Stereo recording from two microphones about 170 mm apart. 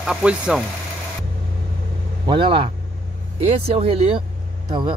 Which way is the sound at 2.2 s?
30° right (ahead or behind).